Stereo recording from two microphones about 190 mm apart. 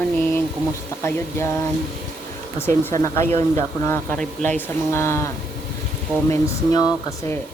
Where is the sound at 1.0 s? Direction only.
15° left (ahead or behind).